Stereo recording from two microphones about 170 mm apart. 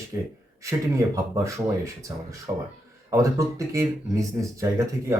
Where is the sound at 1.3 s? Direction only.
20° right (ahead or behind).